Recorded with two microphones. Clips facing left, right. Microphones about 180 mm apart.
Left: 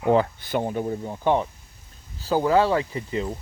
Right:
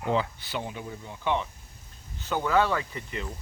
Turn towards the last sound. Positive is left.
turn(degrees=30)  # may be behind; listen again after turning